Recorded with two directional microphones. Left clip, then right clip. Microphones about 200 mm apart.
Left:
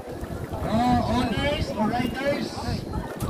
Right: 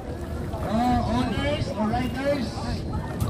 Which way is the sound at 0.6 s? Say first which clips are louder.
Left 1 dB; 40° left (ahead or behind).